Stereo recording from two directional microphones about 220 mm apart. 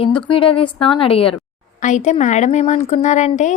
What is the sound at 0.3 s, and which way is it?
A woman's voice, 25° left (ahead or behind).